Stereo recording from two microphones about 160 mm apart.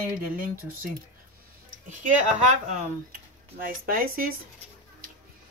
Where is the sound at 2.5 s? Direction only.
55° right (ahead or behind).